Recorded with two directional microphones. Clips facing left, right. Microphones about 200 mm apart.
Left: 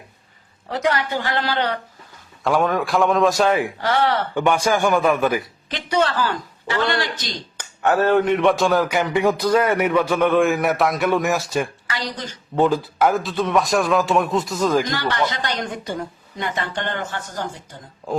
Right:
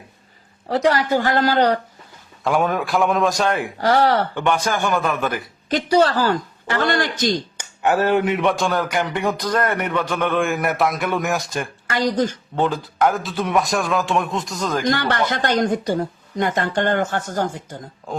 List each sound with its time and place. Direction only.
0.7 s speech: 35° right (ahead or behind)
2.4 s speech: centre (ahead or behind)
3.8 s speech: 40° right (ahead or behind)
4.4 s a man's voice: 10° left (ahead or behind)
5.6 s a woman's voice: 40° right (ahead or behind)
7.6 s speech: 10° right (ahead or behind)
11.9 s a woman's voice: 45° right (ahead or behind)
12.5 s speech: 5° left (ahead or behind)
14.8 s a woman's voice: 55° right (ahead or behind)